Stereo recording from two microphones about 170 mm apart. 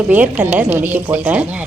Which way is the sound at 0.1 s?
10° right (ahead or behind).